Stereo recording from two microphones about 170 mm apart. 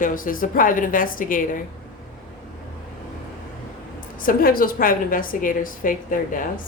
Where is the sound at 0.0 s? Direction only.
55° left (ahead or behind).